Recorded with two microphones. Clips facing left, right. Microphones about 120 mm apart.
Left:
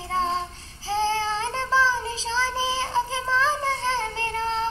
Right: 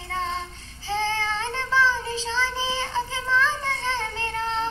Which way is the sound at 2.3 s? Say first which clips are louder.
Left 3 dB; 40° left (ahead or behind).